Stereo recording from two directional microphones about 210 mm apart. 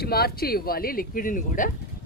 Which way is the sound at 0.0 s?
45° left (ahead or behind).